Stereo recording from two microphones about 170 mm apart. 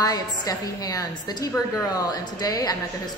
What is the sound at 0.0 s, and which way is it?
A woman's voice, 20° left (ahead or behind).